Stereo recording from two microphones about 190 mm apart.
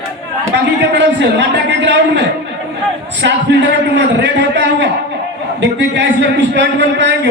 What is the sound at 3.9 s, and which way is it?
A man's voice, 70° right (ahead or behind).